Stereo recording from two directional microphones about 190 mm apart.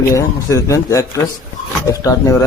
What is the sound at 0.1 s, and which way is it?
Speech, 15° left (ahead or behind).